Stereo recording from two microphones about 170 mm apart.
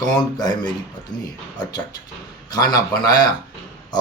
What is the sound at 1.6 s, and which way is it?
Speech, 25° left (ahead or behind).